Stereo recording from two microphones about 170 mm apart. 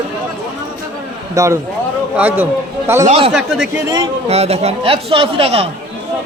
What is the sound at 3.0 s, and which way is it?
Speech, 40° right (ahead or behind).